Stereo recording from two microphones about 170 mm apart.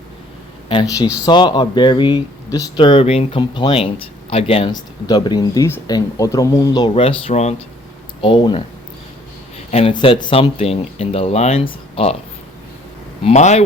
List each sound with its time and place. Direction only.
0.7 s speech: 25° left (ahead or behind)
6.9 s speech: 35° left (ahead or behind)
9.6 s a sound: 40° left (ahead or behind)
9.9 s speech: 30° left (ahead or behind)
13.2 s speech: 40° left (ahead or behind)